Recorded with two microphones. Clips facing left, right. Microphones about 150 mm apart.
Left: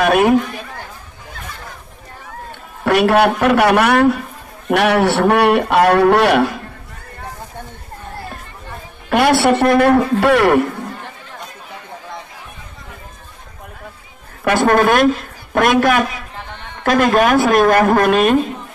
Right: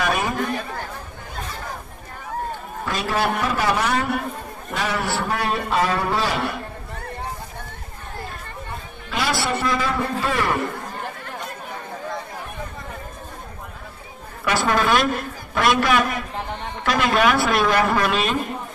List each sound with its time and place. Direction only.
0.0 s a man's voice: 65° left (ahead or behind)
2.8 s speech: 75° left (ahead or behind)
9.1 s a man's voice: 65° left (ahead or behind)
14.4 s speech: 55° left (ahead or behind)